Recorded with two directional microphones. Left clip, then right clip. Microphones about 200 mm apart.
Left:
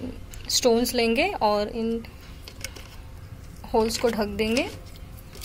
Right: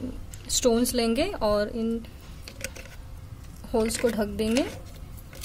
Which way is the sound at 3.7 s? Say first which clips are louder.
Left 3 dB; 15° right (ahead or behind).